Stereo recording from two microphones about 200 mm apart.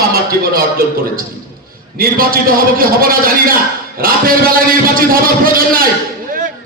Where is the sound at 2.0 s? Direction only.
45° right (ahead or behind).